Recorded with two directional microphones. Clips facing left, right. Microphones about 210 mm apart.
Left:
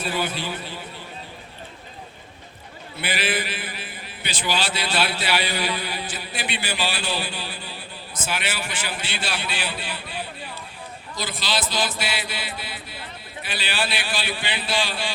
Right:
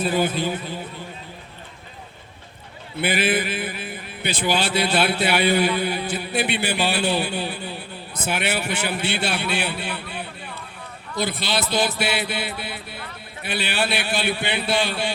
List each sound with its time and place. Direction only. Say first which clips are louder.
0.2 s a man's voice: right 5 dB; 50° right (ahead or behind)
3.0 s a man's voice: right 5 dB; 55° right (ahead or behind)